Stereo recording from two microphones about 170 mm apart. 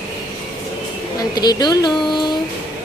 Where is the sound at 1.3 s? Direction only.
25° left (ahead or behind).